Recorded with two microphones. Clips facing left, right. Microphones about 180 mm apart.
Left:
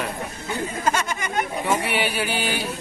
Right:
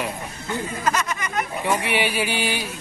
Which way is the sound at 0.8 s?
25° left (ahead or behind).